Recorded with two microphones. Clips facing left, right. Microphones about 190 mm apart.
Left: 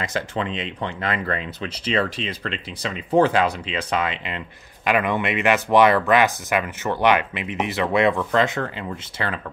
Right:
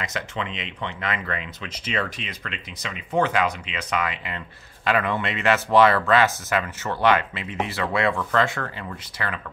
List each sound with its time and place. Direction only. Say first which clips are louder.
0.0 s speech: left 4 dB; 35° left (ahead or behind)